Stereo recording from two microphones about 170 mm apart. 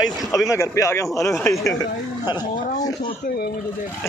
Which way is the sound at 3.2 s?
65° left (ahead or behind).